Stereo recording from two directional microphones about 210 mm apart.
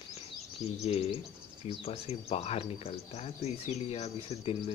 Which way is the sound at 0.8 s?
30° left (ahead or behind).